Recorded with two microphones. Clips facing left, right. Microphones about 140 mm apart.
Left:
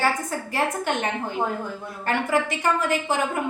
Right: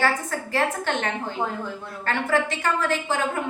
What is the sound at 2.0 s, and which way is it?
Speech, 15° left (ahead or behind).